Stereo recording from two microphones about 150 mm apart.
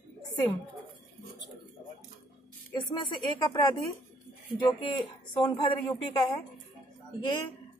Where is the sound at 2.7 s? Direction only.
30° left (ahead or behind).